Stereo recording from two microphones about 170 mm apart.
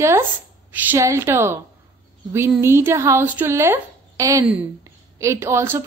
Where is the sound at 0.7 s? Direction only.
15° right (ahead or behind).